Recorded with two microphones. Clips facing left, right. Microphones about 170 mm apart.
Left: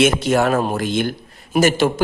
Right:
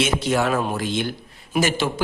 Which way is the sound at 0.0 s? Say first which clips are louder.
Left 5 dB; 50° left (ahead or behind).